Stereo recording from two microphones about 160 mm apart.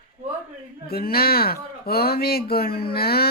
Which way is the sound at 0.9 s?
70° left (ahead or behind).